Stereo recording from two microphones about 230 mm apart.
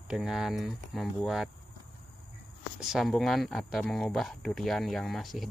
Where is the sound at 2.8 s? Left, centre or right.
Centre.